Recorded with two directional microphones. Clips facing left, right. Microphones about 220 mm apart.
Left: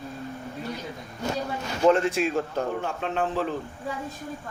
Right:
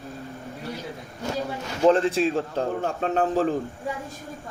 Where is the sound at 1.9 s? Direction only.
30° right (ahead or behind).